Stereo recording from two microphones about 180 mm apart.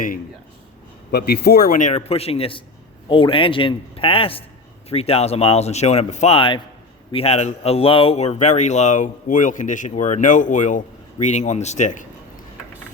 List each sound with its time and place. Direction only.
1.1 s a man's voice: 60° left (ahead or behind); by 12.0 s 45° left (ahead or behind)